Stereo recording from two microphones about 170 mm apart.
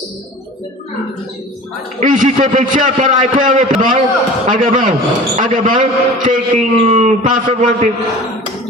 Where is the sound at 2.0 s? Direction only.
50° right (ahead or behind).